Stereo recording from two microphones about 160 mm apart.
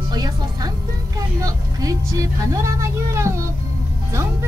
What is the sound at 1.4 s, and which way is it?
Speech, 20° right (ahead or behind).